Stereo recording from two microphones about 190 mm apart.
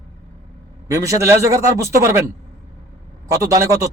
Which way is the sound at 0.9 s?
15° right (ahead or behind).